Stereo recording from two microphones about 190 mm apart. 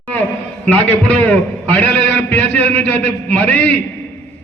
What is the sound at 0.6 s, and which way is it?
A man's voice, 5° left (ahead or behind).